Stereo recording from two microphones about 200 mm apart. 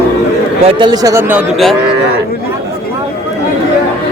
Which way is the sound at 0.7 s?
25° right (ahead or behind).